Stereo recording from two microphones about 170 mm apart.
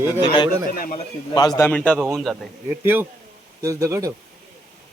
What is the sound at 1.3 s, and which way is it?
A man's voice, 25° left (ahead or behind).